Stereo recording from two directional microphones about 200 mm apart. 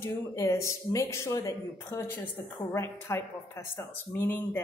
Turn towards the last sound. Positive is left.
turn(degrees=10)  # may be behind; listen again after turning